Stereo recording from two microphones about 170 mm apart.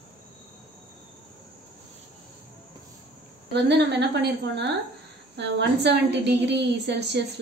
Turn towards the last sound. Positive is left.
turn(degrees=-90)